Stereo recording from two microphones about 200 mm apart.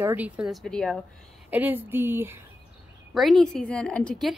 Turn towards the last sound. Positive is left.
turn(degrees=5)  # may be behind; listen again after turning